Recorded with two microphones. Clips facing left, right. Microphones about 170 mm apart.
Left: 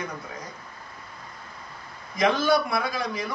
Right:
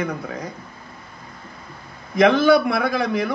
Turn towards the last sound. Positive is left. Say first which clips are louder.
# right 7 dB
turn(degrees=-60)  # may be behind; listen again after turning